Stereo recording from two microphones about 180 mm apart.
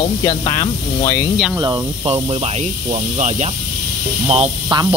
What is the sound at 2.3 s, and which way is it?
Speech, 35° right (ahead or behind).